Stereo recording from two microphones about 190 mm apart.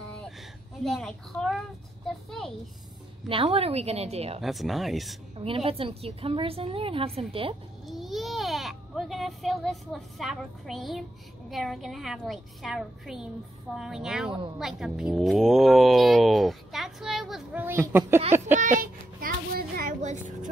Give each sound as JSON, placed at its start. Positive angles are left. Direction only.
{"t": 0.8, "sound": "a woman's voice", "side_deg": 0}
{"t": 3.3, "sound": "a woman's voice", "side_deg": -30}
{"t": 4.4, "sound": "a woman's voice", "side_deg": 0}
{"t": 5.4, "sound": "a woman's voice", "side_deg": -30}
{"t": 7.8, "sound": "a woman's voice", "side_deg": 0}
{"t": 18.6, "sound": "a sound", "side_deg": -45}